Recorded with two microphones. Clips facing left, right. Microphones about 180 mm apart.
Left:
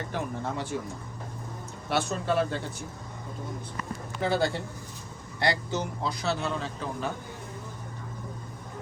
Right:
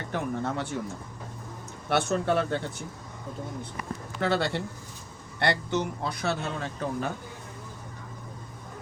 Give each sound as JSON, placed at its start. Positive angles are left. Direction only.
{"t": 0.1, "sound": "speech", "side_deg": -60}
{"t": 1.9, "sound": "a man's voice", "side_deg": -60}
{"t": 4.2, "sound": "a man's voice", "side_deg": -70}
{"t": 5.4, "sound": "a man's voice", "side_deg": -60}